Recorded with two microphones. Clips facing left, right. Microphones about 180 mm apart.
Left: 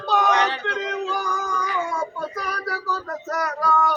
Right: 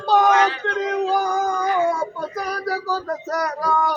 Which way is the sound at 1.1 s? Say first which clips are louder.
Right 6 dB; 35° right (ahead or behind).